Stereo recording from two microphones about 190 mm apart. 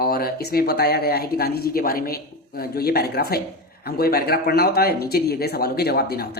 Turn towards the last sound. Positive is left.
turn(degrees=55)  # may be behind; listen again after turning